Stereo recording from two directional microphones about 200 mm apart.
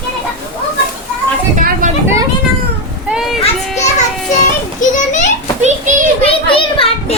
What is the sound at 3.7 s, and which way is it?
Music, 35° left (ahead or behind).